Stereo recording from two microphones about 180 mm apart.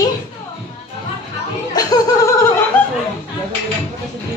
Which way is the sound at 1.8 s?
20° left (ahead or behind).